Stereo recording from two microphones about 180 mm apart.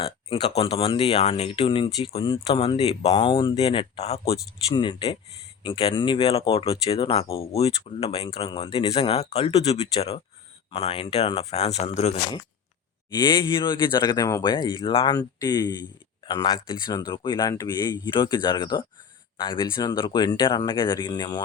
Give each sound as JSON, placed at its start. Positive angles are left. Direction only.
{"t": 0.0, "sound": "speech", "side_deg": 30}
{"t": 13.1, "sound": "speech", "side_deg": 25}